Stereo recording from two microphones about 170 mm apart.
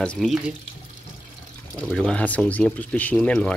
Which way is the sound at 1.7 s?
5° left (ahead or behind).